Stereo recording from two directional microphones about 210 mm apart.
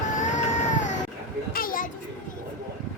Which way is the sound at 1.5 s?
45° left (ahead or behind).